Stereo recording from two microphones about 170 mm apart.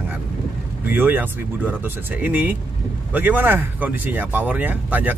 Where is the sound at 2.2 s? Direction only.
10° right (ahead or behind).